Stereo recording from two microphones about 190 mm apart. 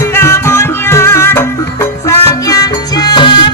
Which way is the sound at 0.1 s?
15° left (ahead or behind).